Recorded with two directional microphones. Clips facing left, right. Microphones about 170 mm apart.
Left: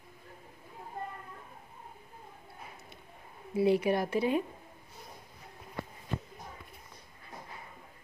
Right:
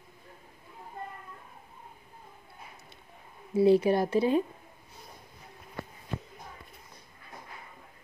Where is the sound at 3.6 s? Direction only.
30° right (ahead or behind).